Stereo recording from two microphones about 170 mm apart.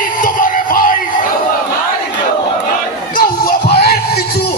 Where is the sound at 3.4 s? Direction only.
65° left (ahead or behind).